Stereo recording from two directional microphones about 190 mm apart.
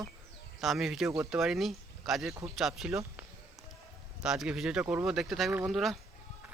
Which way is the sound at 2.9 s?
15° right (ahead or behind).